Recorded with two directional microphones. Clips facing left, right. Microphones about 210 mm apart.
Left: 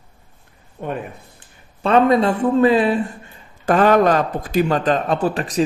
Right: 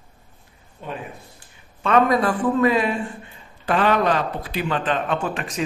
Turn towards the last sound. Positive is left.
turn(degrees=35)  # may be behind; listen again after turning